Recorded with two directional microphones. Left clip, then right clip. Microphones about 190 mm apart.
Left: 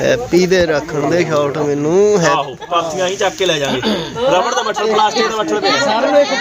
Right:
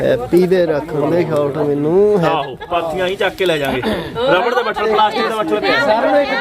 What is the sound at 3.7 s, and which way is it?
Speech, 50° left (ahead or behind).